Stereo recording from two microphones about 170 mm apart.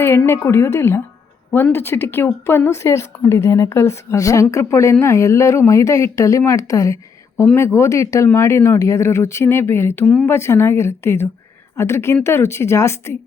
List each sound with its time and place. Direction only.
0.0 s speech: 15° left (ahead or behind)